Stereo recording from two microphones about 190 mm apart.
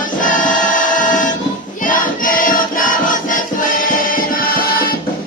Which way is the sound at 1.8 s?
45° left (ahead or behind).